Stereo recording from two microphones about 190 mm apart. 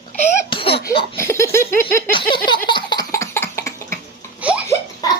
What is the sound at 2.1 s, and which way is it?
Laughter, 25° left (ahead or behind).